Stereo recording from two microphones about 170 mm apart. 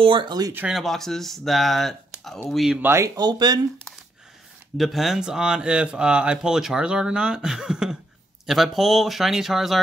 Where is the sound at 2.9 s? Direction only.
15° right (ahead or behind).